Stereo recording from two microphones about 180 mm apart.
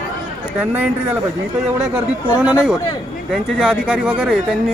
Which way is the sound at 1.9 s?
5° right (ahead or behind).